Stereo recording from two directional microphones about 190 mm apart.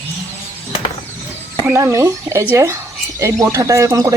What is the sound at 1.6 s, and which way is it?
A woman's voice, 15° right (ahead or behind).